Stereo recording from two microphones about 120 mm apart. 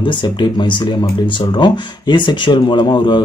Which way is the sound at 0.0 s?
40° left (ahead or behind).